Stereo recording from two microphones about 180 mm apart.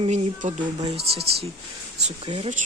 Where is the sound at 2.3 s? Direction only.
30° right (ahead or behind).